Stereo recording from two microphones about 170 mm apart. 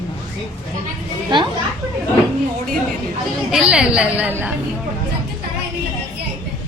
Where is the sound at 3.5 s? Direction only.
5° right (ahead or behind).